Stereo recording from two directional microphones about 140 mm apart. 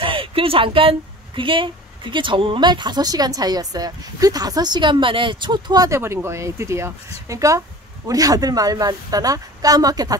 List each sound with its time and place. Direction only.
0.0 s speech: 40° right (ahead or behind)